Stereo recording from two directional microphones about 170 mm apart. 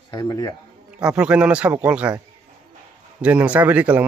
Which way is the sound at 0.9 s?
5° right (ahead or behind).